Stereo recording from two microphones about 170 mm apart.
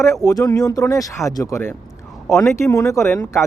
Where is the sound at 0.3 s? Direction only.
20° left (ahead or behind).